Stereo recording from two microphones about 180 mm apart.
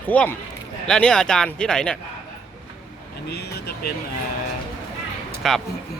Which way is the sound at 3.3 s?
65° left (ahead or behind).